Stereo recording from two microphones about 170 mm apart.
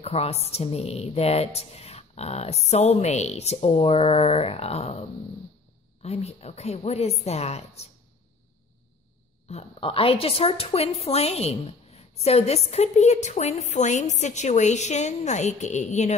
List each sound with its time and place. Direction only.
0.0 s a woman's voice: 35° left (ahead or behind)
6.0 s a woman's voice: 40° left (ahead or behind)
9.5 s a woman's voice: 35° left (ahead or behind)